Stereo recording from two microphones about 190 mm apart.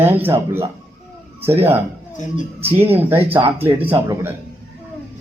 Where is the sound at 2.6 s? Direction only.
10° right (ahead or behind).